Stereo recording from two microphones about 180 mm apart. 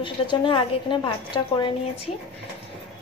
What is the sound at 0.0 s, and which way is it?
A woman's voice, 25° left (ahead or behind).